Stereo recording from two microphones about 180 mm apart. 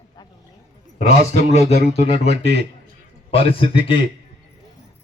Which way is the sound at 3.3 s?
30° left (ahead or behind).